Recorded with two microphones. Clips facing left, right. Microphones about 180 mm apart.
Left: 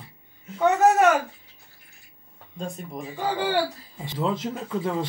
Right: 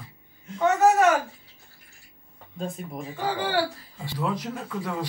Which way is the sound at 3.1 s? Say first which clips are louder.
Left 2 dB; 20° left (ahead or behind).